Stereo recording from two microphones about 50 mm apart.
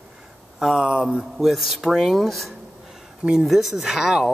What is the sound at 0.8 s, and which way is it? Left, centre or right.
Speech, right.